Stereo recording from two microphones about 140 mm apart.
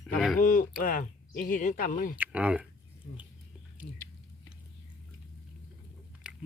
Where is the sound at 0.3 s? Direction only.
80° left.